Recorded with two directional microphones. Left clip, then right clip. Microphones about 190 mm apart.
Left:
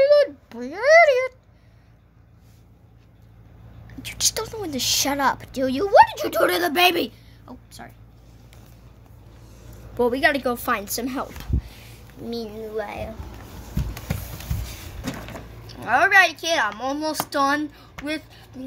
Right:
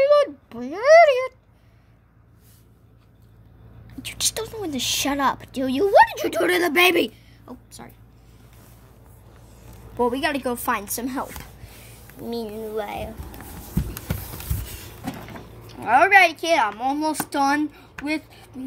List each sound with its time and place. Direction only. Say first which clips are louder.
0.0 s a sound: left 1 dB; centre (ahead or behind)
4.0 s a woman's voice: left 2 dB; 5° right (ahead or behind)
9.9 s a woman's voice: left 3 dB; 10° left (ahead or behind)
11.4 s a sound: left 7 dB; centre (ahead or behind)
12.2 s speech: right 1 dB; 10° right (ahead or behind)
15.6 s a woman's voice: right 2 dB; 10° right (ahead or behind)